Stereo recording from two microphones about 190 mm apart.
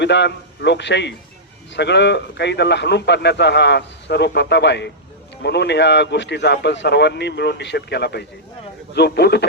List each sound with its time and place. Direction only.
0.0 s speech: 65° left (ahead or behind)